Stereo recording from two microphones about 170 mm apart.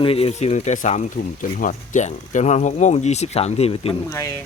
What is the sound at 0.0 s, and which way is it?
Speech, 35° left (ahead or behind).